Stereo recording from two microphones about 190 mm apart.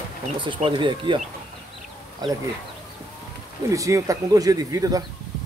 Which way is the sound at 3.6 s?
15° right (ahead or behind).